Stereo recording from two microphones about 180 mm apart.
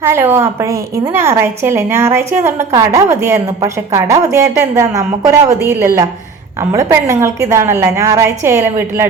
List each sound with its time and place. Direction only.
0.0 s a woman's voice: 15° right (ahead or behind)